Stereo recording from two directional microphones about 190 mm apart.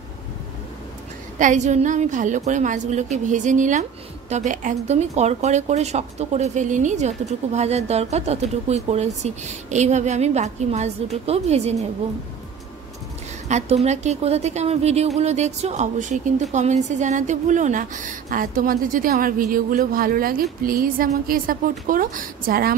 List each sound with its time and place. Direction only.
1.4 s speech: 40° right (ahead or behind)
13.5 s a woman's voice: 35° right (ahead or behind)